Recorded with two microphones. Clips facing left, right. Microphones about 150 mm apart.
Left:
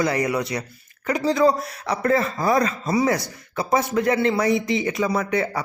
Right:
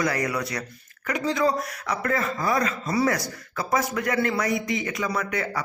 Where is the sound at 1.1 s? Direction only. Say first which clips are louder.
Left 5 dB; 35° left (ahead or behind).